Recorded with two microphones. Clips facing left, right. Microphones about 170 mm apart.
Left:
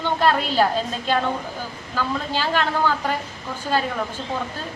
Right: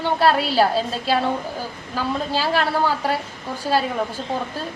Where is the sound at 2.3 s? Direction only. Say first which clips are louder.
Right 1 dB; 10° right (ahead or behind).